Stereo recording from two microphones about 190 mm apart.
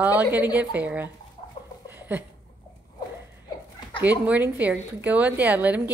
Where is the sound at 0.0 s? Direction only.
10° right (ahead or behind).